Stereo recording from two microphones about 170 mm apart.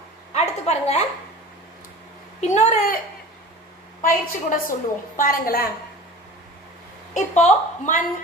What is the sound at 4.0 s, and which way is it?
A woman's voice, 50° left (ahead or behind).